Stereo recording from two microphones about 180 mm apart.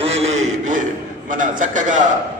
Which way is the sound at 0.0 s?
40° right (ahead or behind).